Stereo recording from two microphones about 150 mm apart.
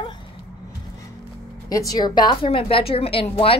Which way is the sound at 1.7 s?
25° left (ahead or behind).